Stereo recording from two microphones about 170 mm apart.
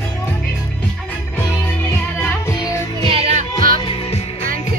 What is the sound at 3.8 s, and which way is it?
Music, 35° left (ahead or behind).